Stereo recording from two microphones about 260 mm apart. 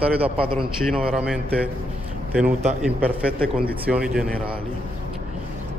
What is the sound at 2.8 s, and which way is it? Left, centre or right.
A man's voice, centre.